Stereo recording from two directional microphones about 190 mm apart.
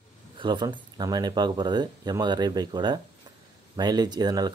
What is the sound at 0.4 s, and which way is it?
Speech, 25° right (ahead or behind).